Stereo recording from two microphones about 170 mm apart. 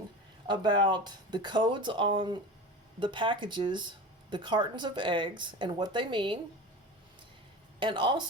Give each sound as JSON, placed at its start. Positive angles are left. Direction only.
{"t": 0.4, "sound": "speech", "side_deg": -25}
{"t": 7.8, "sound": "speech", "side_deg": -30}